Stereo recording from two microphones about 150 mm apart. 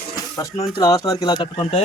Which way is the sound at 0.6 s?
25° left (ahead or behind).